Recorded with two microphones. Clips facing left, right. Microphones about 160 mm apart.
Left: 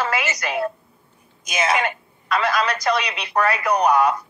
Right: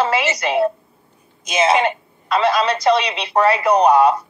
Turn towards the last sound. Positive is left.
turn(degrees=-25)  # may be behind; listen again after turning